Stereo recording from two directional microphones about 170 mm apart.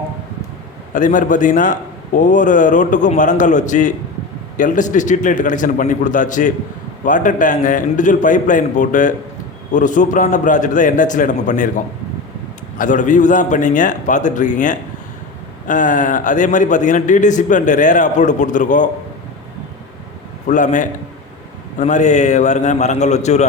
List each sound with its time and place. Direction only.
0.9 s a man's voice: 50° left (ahead or behind)
12.8 s a man's voice: 50° left (ahead or behind)
20.5 s a man's voice: 45° left (ahead or behind)